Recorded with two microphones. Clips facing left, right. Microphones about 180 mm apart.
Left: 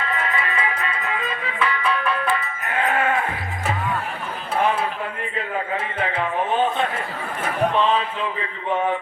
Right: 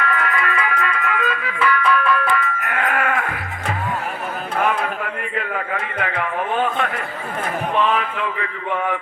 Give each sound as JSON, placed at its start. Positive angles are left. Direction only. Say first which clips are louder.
{"t": 0.0, "sound": "music", "louder": "right 3 dB", "side_deg": 25}
{"t": 5.7, "sound": "a man's voice", "louder": "even", "side_deg": 25}